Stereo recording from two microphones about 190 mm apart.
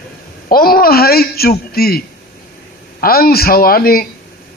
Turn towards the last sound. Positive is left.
turn(degrees=50)  # may be behind; listen again after turning